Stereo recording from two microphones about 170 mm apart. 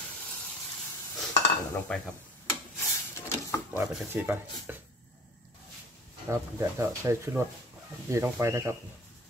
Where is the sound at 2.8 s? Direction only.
15° left (ahead or behind).